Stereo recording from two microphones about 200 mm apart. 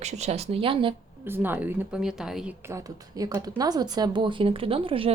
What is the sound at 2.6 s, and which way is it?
A woman's voice, 15° right (ahead or behind).